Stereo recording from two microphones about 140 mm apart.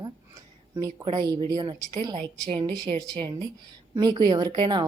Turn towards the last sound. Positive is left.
turn(degrees=-35)  # may be behind; listen again after turning